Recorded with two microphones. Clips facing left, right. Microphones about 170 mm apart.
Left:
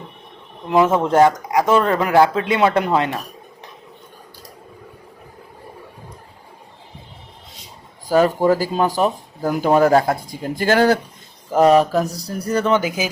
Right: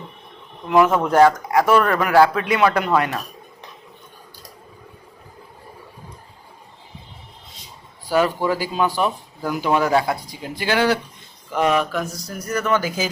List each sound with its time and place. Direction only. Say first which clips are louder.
0.7 s speech: left 1 dB; 25° left (ahead or behind)
8.0 s speech: left 4 dB; 45° left (ahead or behind); by 13.1 s 15° left (ahead or behind)